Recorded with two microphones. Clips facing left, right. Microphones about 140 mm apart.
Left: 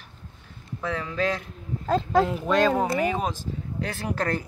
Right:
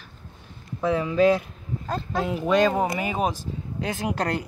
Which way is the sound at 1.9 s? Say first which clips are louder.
Left 7 dB; 90° left.